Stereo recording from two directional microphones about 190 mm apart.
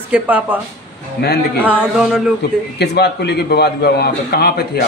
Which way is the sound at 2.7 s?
60° left (ahead or behind).